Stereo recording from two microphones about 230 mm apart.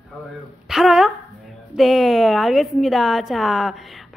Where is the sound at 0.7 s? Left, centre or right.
Centre.